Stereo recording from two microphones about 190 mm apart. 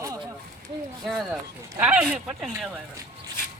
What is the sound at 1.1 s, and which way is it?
Speech, 5° right (ahead or behind).